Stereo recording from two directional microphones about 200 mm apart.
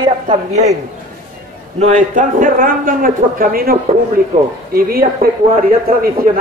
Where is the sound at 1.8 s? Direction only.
40° right (ahead or behind).